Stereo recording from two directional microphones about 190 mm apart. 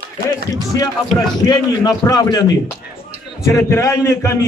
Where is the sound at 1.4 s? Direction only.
20° left (ahead or behind).